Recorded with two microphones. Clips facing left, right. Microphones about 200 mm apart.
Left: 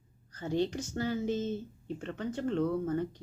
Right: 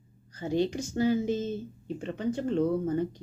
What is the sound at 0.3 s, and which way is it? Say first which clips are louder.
Speech: right 3 dB; 10° right (ahead or behind).